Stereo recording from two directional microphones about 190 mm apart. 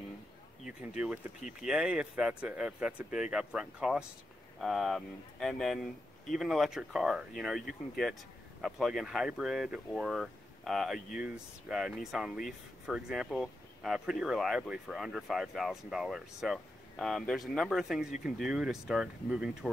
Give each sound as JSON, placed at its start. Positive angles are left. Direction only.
{"t": 0.7, "sound": "speech", "side_deg": -5}